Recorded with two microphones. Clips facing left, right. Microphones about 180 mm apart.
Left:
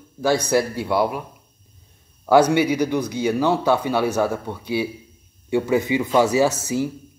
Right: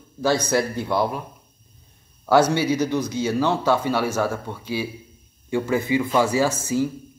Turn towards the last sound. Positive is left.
turn(degrees=15)  # may be behind; listen again after turning